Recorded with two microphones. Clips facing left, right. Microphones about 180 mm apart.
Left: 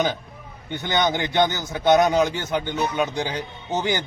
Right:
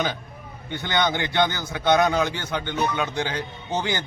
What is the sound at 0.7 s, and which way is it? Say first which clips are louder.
A man's voice: left 2 dB; 15° left (ahead or behind).